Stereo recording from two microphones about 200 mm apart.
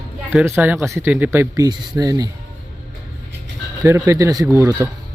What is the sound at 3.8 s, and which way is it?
Speech, 15° right (ahead or behind).